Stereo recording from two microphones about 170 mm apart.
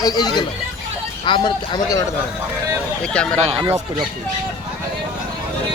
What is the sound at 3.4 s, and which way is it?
Speech, 35° right (ahead or behind).